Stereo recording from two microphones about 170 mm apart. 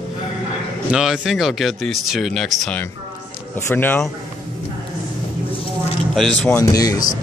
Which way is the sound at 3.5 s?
15° left (ahead or behind).